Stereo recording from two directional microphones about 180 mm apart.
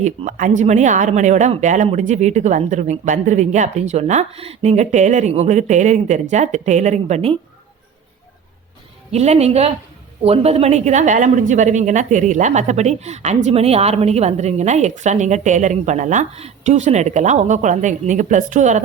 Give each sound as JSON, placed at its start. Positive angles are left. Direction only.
{"t": 0.0, "sound": "speech", "side_deg": -40}
{"t": 9.1, "sound": "speech", "side_deg": -35}